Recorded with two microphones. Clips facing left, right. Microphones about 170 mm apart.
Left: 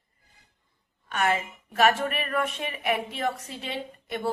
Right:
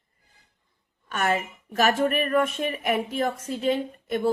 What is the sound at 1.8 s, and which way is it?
Speech, 40° right (ahead or behind).